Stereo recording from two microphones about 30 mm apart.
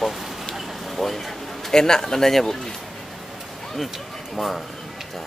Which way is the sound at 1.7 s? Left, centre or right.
Left.